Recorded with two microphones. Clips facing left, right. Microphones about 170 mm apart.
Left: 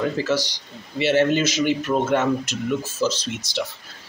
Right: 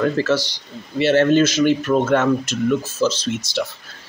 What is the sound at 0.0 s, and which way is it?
Speech, 15° left (ahead or behind).